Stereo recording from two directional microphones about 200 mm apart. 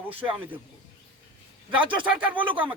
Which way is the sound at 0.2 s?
25° right (ahead or behind).